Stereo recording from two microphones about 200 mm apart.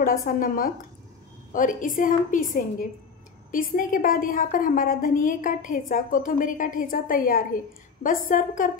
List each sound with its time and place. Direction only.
0.0 s a woman's voice: 45° left (ahead or behind)